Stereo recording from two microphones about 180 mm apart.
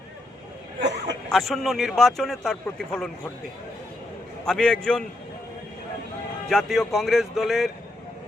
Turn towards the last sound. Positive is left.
turn(degrees=0)  # may be behind; listen again after turning